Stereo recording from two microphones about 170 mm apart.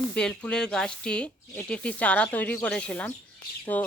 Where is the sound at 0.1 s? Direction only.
5° left (ahead or behind).